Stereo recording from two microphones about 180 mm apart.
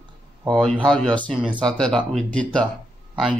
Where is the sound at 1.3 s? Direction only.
5° right (ahead or behind).